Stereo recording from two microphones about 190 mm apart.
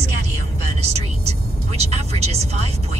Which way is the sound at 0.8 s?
35° right (ahead or behind).